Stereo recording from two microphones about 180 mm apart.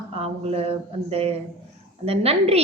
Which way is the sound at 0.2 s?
35° right (ahead or behind).